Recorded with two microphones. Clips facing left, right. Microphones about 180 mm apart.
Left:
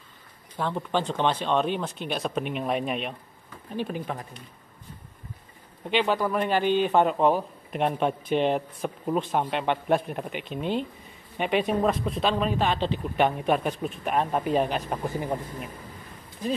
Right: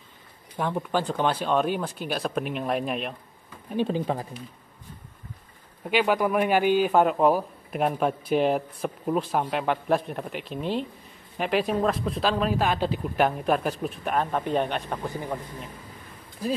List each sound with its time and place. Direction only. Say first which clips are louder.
0.6 s a man's voice: right 1 dB; 10° right (ahead or behind)
3.7 s speech: right 5 dB; 25° right (ahead or behind)
5.9 s a man's voice: right 2 dB; 10° right (ahead or behind)
15.0 s speech: left 2 dB; 20° left (ahead or behind)